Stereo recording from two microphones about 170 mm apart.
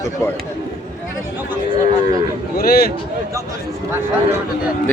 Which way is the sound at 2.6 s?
60° left (ahead or behind).